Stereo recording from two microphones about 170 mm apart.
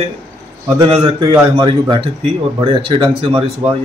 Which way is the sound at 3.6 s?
40° right (ahead or behind).